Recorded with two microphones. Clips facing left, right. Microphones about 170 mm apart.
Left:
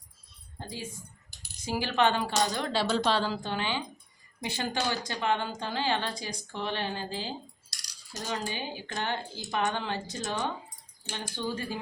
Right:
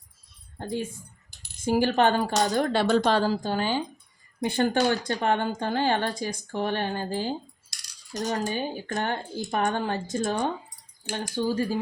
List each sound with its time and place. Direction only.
0.6 s speech: 55° right (ahead or behind)
4.4 s speech: 55° right (ahead or behind)
11.1 s speech: 40° right (ahead or behind)